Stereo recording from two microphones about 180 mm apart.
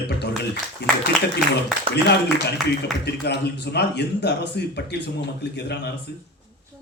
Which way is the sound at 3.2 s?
70° left (ahead or behind).